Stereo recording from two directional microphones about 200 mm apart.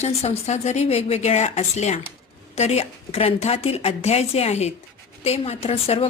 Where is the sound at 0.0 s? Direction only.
30° left (ahead or behind).